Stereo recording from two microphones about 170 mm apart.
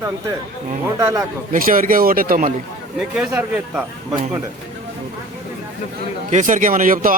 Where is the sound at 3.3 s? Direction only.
10° right (ahead or behind).